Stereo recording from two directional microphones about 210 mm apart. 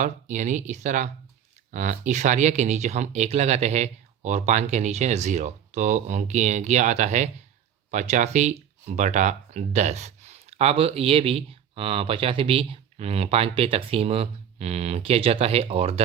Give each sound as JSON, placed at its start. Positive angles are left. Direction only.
{"t": 0.0, "sound": "speech", "side_deg": -35}